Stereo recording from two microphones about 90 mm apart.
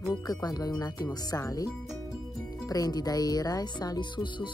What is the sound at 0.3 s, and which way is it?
Speech, 45° left (ahead or behind).